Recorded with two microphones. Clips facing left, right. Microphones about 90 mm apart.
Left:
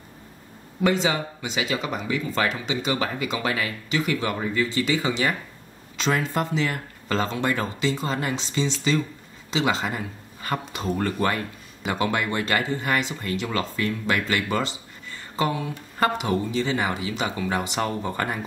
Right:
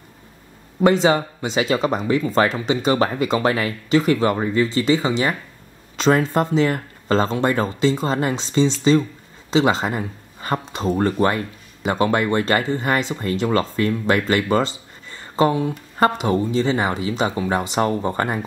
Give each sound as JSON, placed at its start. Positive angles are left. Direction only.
{"t": 1.0, "sound": "speech", "side_deg": -35}